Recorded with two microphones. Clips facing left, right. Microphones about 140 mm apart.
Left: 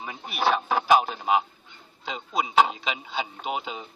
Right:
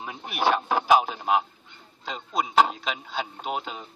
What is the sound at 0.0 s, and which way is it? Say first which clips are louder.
A man's voice: right 1 dB; centre (ahead or behind).